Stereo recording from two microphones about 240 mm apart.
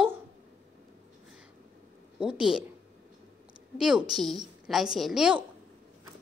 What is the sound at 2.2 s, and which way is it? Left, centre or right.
Speech, centre.